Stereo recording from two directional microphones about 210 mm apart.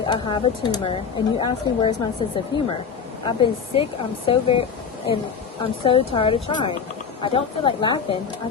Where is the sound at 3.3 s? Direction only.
25° left (ahead or behind).